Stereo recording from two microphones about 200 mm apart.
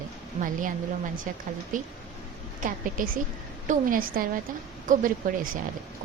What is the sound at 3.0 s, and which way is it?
A woman's voice, 40° right (ahead or behind).